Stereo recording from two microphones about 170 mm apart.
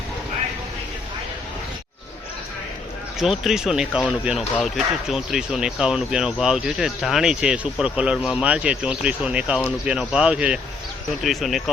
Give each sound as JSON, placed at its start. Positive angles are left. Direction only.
{"t": 3.2, "sound": "speech", "side_deg": 0}